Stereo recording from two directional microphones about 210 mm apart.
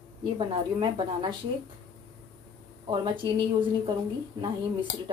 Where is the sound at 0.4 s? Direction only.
20° right (ahead or behind).